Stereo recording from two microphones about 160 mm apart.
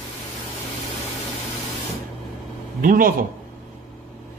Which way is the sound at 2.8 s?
60° right (ahead or behind).